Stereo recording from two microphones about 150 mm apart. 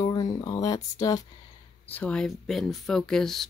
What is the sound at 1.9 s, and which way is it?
Speech, 10° left (ahead or behind).